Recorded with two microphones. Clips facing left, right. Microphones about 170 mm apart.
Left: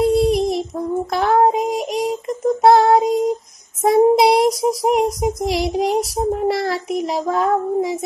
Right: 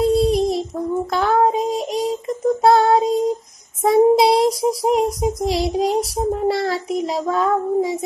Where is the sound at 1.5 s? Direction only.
25° right (ahead or behind).